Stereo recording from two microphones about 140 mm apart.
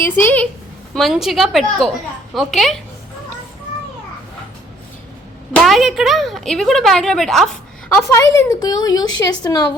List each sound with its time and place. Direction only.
0.0 s a woman's voice: 15° left (ahead or behind)
0.9 s a woman's voice: centre (ahead or behind)
5.6 s a woman's voice: centre (ahead or behind)
8.1 s a woman's voice: 20° left (ahead or behind)